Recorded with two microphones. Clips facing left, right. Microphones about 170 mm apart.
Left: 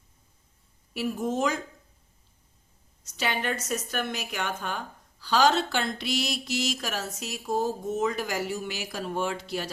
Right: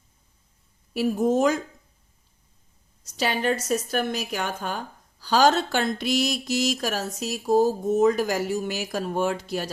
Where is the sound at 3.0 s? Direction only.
35° right (ahead or behind).